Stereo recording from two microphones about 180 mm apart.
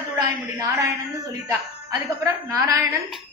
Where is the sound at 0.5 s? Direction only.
15° right (ahead or behind).